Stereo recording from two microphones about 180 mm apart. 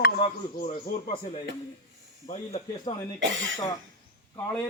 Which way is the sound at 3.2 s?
90° right.